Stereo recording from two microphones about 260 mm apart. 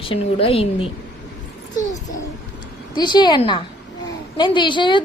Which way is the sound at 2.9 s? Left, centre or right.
Centre.